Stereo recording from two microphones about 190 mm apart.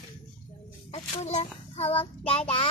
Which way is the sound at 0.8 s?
30° left (ahead or behind).